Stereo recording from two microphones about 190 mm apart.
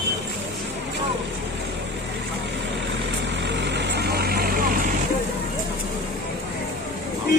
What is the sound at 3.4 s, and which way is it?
Vehicle, 65° right (ahead or behind).